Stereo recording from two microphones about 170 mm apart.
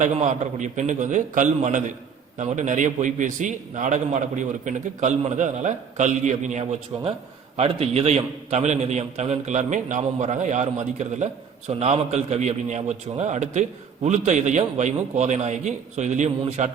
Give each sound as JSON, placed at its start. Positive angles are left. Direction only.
{"t": 0.0, "sound": "a man's voice", "side_deg": -45}